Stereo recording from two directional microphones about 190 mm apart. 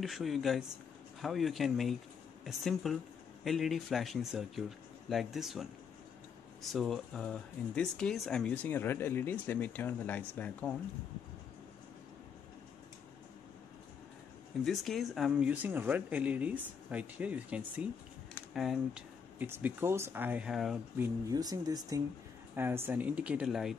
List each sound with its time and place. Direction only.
0.0 s speech: centre (ahead or behind)
14.6 s speech: centre (ahead or behind)
21.0 s speech: 20° right (ahead or behind); by 23.8 s centre (ahead or behind)